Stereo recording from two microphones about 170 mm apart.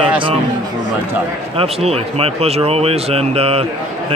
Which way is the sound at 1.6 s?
35° right (ahead or behind).